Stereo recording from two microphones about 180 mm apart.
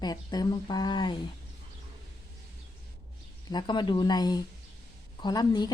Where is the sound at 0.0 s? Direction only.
20° left (ahead or behind).